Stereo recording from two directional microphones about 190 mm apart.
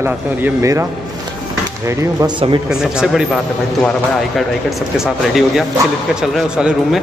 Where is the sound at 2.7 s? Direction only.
5° right (ahead or behind).